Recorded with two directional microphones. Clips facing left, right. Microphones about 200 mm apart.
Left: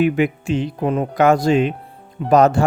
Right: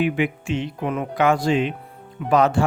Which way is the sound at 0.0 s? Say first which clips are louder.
Left 5 dB; 40° left (ahead or behind).